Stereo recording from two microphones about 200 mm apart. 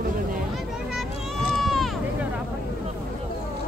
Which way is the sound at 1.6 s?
Centre (ahead or behind).